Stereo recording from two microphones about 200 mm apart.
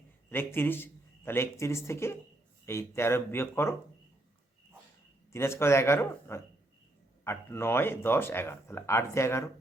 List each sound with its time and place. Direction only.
0.3 s speech: 10° left (ahead or behind)
5.3 s speech: 15° left (ahead or behind)